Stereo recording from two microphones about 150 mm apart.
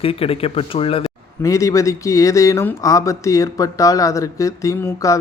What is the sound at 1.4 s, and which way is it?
Speech, 20° left (ahead or behind).